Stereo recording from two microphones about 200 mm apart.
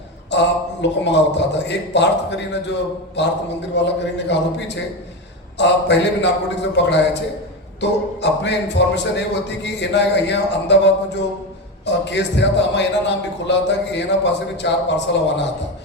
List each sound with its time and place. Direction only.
0.3 s a man's voice: 60° left (ahead or behind)